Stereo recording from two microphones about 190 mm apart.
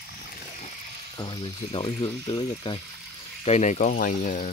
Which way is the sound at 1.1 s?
25° left (ahead or behind).